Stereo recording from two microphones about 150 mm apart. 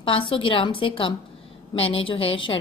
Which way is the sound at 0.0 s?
35° left (ahead or behind).